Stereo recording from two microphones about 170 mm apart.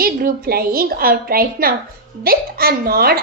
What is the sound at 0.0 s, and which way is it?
A woman's voice, 60° right (ahead or behind).